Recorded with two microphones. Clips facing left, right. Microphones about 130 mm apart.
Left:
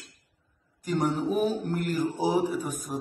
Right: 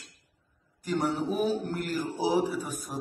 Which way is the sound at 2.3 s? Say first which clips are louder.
Right 2 dB; 45° left (ahead or behind).